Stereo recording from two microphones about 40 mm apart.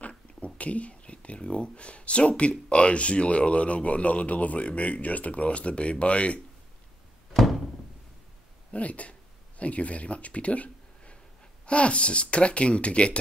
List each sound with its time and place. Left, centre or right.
0.4 s speech: left
7.3 s thunk: centre
8.7 s speech: left